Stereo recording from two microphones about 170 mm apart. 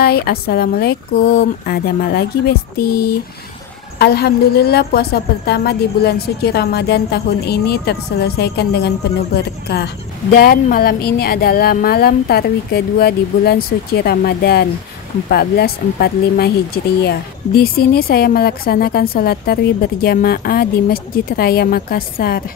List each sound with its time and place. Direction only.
0.0 s a woman's voice: 65° left (ahead or behind)